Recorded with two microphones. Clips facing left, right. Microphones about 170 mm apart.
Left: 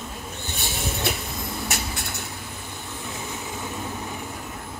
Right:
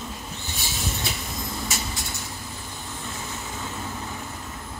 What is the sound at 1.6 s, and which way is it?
Vehicle, 60° left (ahead or behind).